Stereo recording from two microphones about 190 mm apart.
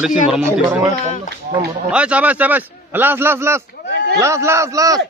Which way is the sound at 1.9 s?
5° right (ahead or behind).